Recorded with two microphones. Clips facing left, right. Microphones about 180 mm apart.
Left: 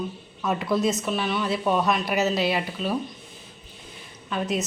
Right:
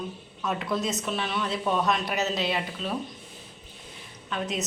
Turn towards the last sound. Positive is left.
turn(degrees=5)  # may be behind; listen again after turning